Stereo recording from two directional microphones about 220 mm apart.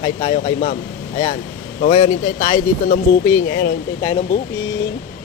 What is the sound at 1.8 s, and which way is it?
Speech, 30° left (ahead or behind).